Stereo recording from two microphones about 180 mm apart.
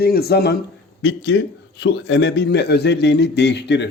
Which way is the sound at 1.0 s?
85° left.